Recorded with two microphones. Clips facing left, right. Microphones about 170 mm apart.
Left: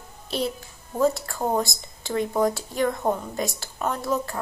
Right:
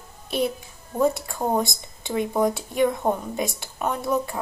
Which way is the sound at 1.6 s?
20° right (ahead or behind).